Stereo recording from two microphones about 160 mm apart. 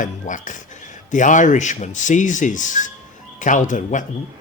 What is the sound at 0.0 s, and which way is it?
Speech, 55° left (ahead or behind).